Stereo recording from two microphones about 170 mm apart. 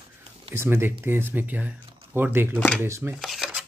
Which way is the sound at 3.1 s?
Centre (ahead or behind).